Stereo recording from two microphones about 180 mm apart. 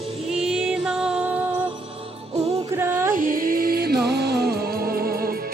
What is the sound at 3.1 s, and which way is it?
Music, 50° right (ahead or behind).